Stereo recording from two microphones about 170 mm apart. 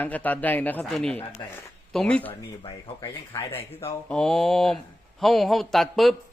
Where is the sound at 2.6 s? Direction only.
30° left (ahead or behind).